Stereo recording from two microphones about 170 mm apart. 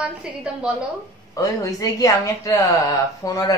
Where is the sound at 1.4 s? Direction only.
20° left (ahead or behind).